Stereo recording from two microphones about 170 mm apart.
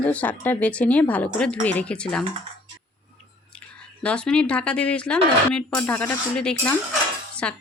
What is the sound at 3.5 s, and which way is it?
Speech, 5° left (ahead or behind).